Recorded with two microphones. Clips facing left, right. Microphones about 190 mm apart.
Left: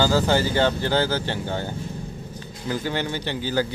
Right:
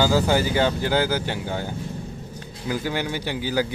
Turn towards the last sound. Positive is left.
turn(degrees=-10)  # may be behind; listen again after turning